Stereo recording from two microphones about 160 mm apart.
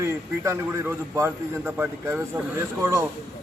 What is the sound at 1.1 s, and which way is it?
Speech, 15° right (ahead or behind).